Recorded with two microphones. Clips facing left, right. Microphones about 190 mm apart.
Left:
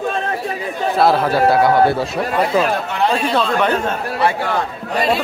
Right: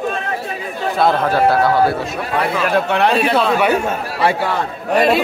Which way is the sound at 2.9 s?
65° right (ahead or behind).